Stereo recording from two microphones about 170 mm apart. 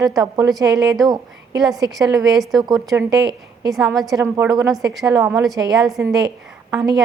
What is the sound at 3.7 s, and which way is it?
Speech, centre (ahead or behind).